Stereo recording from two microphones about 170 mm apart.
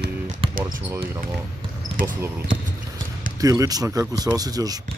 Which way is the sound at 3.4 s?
20° right (ahead or behind).